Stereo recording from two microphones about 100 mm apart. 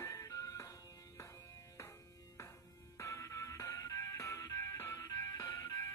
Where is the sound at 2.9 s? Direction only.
30° left (ahead or behind).